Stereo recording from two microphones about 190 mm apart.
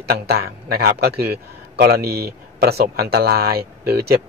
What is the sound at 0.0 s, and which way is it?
A man's voice, 55° right (ahead or behind).